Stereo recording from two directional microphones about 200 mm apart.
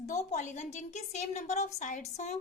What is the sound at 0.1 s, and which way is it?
A woman's voice, 35° left (ahead or behind).